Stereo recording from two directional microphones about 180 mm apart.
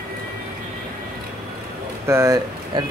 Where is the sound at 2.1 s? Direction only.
15° right (ahead or behind).